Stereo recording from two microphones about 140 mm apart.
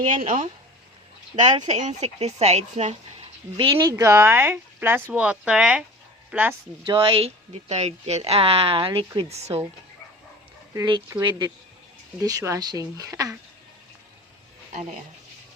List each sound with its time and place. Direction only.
0.1 s speech: 70° right (ahead or behind)
1.4 s speech: 55° right (ahead or behind); by 3.8 s 40° right (ahead or behind)
3.8 s speech: 25° right (ahead or behind)
6.8 s speech: 40° right (ahead or behind)
9.3 s speech: 50° right (ahead or behind)
11.2 s speech: 30° right (ahead or behind)
14.7 s speech: 60° right (ahead or behind)